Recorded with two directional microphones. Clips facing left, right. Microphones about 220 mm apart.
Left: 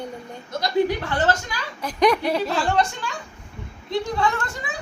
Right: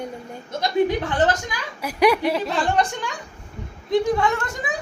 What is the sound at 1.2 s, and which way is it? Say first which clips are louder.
A woman's voice: right 2 dB; 15° right (ahead or behind).